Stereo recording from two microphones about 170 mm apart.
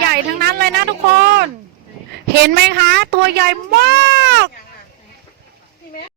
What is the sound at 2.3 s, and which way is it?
Speech, 75° right (ahead or behind).